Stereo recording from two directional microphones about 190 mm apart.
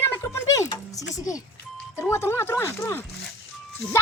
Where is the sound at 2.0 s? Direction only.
15° left (ahead or behind).